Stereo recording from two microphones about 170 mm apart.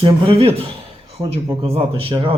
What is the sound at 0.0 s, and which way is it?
Speech, 35° right (ahead or behind).